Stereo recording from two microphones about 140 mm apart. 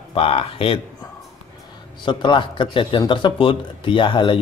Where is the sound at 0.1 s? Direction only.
40° left (ahead or behind).